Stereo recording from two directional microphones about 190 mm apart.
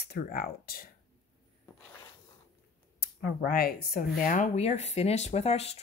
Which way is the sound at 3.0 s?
55° left (ahead or behind).